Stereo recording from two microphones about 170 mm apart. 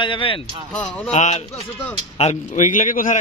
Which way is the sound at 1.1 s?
40° left (ahead or behind).